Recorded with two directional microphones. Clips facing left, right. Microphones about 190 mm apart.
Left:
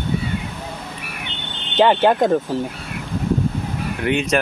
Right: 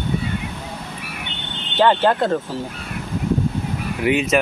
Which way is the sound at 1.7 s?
15° left (ahead or behind).